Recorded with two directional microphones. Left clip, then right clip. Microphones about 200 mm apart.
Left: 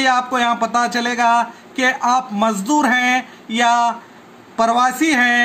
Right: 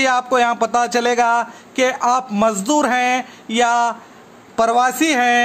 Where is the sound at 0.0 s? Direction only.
55° right (ahead or behind).